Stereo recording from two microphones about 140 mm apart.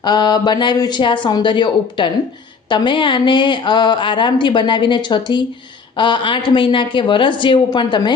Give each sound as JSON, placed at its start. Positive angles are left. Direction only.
{"t": 0.0, "sound": "speech", "side_deg": 30}